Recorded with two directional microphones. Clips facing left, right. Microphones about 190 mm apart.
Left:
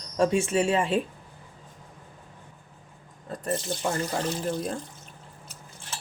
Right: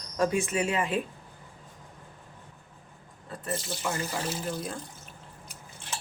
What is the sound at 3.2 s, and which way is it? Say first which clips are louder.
Water tap: left 4 dB; 40° left (ahead or behind).